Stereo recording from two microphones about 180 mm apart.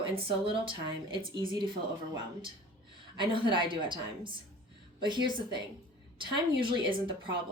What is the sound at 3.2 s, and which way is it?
Speech, 25° right (ahead or behind).